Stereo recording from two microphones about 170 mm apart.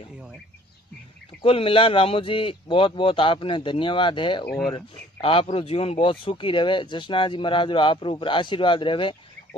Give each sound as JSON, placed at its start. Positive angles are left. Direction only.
{"t": 1.4, "sound": "speech", "side_deg": 35}